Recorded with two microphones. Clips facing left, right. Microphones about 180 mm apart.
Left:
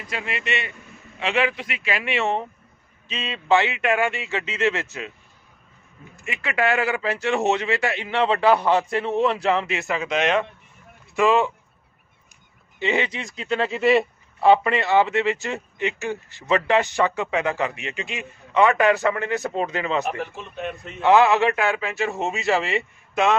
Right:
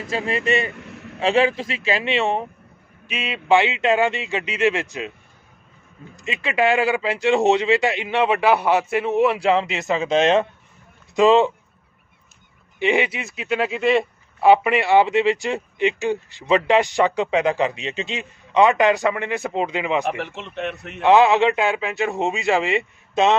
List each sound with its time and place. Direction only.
0.1 s speech: 35° right (ahead or behind)
0.8 s a sound: 75° right (ahead or behind)
1.2 s speech: 35° right (ahead or behind); by 5.1 s 15° right (ahead or behind)
6.1 s speech: 20° right (ahead or behind)
12.8 s speech: 15° right (ahead or behind)
14.5 s speech: 10° right (ahead or behind)
20.1 s a man's voice: 85° right; by 21.0 s 70° right (ahead or behind)
21.0 s speech: 20° right (ahead or behind)